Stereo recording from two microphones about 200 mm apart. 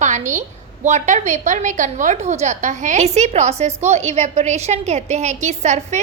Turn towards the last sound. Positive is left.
turn(degrees=-35)  # may be behind; listen again after turning